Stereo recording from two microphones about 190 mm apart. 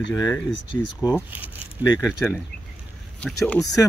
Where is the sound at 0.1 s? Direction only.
20° left (ahead or behind).